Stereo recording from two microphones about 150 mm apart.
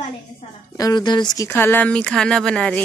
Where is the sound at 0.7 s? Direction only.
25° left (ahead or behind).